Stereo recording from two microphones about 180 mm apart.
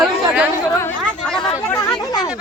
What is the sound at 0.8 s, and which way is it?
Speech, 10° left (ahead or behind).